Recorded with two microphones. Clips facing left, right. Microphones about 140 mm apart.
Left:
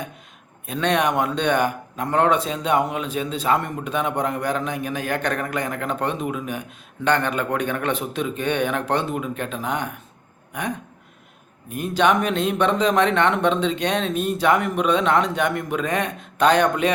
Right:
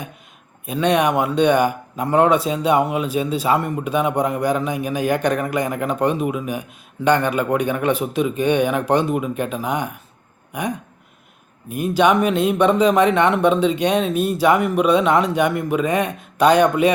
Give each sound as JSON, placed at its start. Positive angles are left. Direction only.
{"t": 0.6, "sound": "speech", "side_deg": -10}
{"t": 11.7, "sound": "speech", "side_deg": -10}